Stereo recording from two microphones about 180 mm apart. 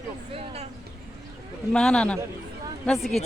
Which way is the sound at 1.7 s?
5° left (ahead or behind).